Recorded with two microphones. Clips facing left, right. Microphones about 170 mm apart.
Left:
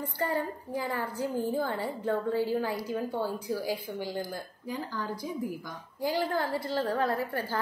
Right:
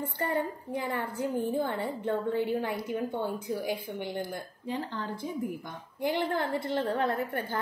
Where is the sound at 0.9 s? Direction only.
25° right (ahead or behind).